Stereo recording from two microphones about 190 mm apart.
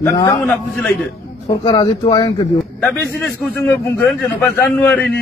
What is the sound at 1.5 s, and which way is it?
Speech, 20° left (ahead or behind).